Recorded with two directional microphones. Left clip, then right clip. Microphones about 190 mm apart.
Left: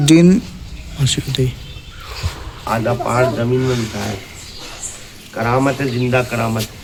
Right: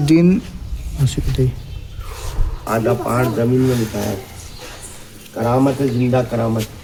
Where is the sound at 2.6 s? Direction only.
30° left (ahead or behind).